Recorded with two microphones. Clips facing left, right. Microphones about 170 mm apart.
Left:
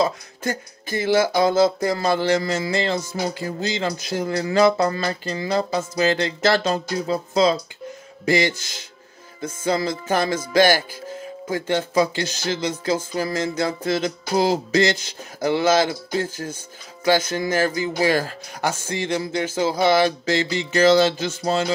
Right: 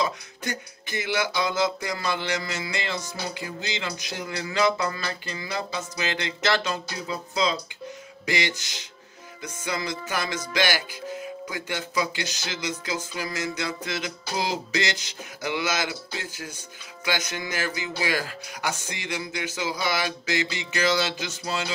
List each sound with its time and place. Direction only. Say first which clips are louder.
0.0 s speech: left 6 dB; 45° left (ahead or behind)
1.0 s music: left 9 dB; 45° left (ahead or behind)